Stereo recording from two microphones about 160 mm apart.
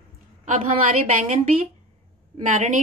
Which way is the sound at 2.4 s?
50° right (ahead or behind).